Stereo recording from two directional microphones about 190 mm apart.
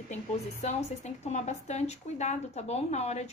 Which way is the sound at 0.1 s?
35° left (ahead or behind).